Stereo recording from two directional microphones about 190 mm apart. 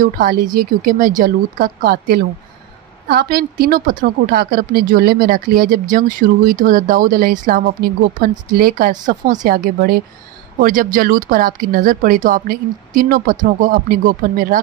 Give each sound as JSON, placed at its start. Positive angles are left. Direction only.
{"t": 0.0, "sound": "a woman's voice", "side_deg": -50}